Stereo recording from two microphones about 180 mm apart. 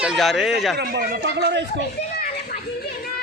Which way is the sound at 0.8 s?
65° right (ahead or behind).